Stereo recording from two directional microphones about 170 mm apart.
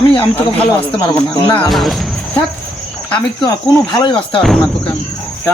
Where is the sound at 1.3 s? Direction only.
15° left (ahead or behind).